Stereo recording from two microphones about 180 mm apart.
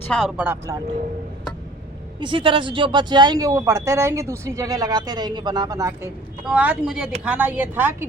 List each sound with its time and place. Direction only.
0.1 s a woman's voice: centre (ahead or behind)
2.2 s a woman's voice: 30° right (ahead or behind); by 8.0 s 10° right (ahead or behind)